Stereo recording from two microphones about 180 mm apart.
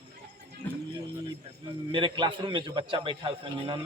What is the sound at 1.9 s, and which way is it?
A man's voice, 25° right (ahead or behind).